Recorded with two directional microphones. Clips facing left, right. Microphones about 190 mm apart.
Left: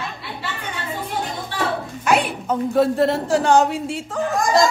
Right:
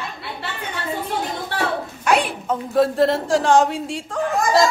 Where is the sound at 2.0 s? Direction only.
Centre (ahead or behind).